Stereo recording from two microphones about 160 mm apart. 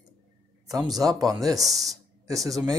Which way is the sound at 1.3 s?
20° right (ahead or behind).